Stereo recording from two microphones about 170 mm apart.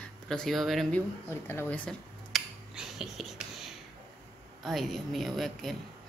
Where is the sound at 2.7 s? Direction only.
Centre (ahead or behind).